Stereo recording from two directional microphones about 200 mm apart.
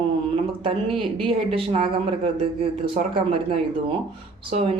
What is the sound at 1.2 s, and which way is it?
Speech, 30° right (ahead or behind).